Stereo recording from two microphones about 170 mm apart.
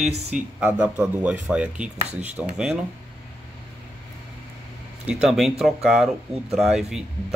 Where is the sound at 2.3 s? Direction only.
5° right (ahead or behind).